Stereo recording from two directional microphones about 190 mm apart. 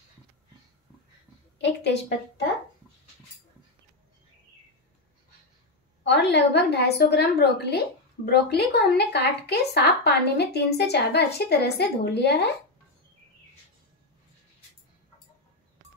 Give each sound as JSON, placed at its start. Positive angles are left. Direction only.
{"t": 1.6, "sound": "a woman's voice", "side_deg": 65}
{"t": 6.0, "sound": "a woman's voice", "side_deg": 65}